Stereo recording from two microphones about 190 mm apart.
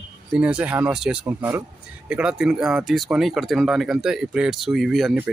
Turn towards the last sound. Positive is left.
turn(degrees=0)  # may be behind; listen again after turning